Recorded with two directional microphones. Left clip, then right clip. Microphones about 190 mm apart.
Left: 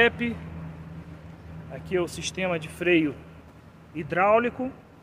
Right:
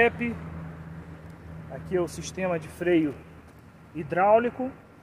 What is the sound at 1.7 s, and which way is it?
Speech, 5° left (ahead or behind).